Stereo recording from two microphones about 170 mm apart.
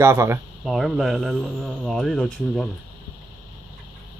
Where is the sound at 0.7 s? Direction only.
Centre (ahead or behind).